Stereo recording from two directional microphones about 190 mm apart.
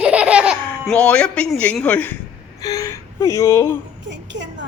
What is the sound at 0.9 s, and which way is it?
A woman's voice, 5° left (ahead or behind).